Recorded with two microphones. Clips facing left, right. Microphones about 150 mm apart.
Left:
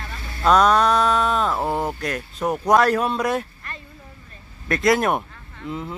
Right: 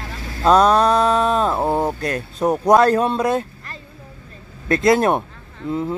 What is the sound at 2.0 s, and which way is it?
Speech, 30° right (ahead or behind).